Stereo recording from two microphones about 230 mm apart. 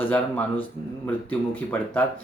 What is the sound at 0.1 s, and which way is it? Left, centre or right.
Speech, centre.